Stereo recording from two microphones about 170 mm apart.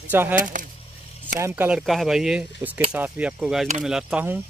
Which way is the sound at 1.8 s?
Centre (ahead or behind).